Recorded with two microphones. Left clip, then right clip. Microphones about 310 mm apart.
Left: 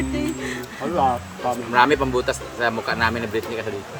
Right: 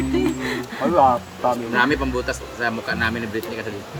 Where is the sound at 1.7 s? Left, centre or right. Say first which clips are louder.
Left 7 dB; centre.